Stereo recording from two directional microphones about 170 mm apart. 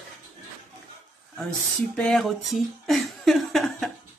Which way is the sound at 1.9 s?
5° left (ahead or behind).